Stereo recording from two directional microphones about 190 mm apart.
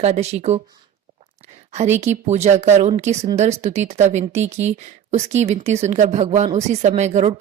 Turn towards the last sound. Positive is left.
turn(degrees=-35)  # may be behind; listen again after turning